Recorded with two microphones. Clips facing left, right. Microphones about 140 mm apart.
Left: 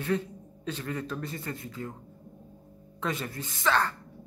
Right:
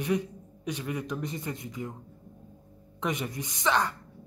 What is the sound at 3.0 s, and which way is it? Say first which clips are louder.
Speech: right 1 dB; 15° right (ahead or behind).